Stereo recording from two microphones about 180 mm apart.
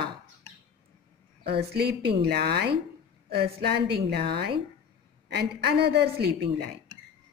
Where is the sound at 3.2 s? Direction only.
60° right (ahead or behind).